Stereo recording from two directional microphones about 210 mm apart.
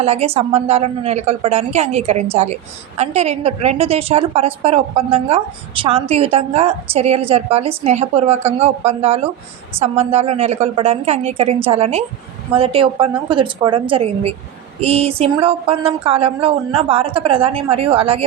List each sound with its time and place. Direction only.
0.0 s a woman's voice: 30° right (ahead or behind)